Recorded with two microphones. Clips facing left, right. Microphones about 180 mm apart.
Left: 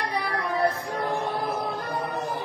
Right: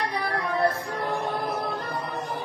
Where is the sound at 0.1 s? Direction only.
10° left (ahead or behind).